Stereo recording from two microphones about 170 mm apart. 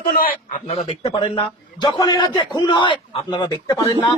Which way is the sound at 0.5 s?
35° left (ahead or behind).